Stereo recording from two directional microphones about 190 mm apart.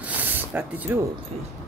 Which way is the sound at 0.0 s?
10° right (ahead or behind).